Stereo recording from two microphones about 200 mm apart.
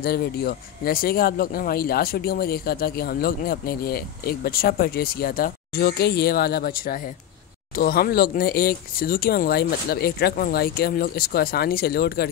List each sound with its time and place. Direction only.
0.0 s speech: 50° left (ahead or behind)